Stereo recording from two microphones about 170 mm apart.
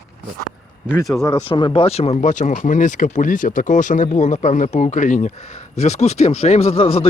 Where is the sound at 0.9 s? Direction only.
Centre (ahead or behind).